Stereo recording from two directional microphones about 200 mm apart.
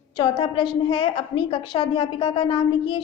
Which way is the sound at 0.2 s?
25° left (ahead or behind).